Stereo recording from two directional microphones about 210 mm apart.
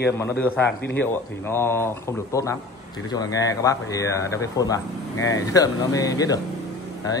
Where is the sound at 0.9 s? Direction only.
10° left (ahead or behind).